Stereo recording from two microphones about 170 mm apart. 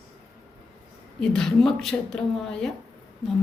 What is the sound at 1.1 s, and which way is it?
A woman's voice, 5° left (ahead or behind).